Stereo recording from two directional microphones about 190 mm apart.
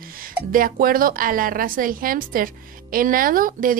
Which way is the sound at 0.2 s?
45° right (ahead or behind).